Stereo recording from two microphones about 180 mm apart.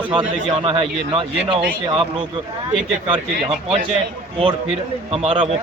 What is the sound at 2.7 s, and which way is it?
Speech, 30° right (ahead or behind).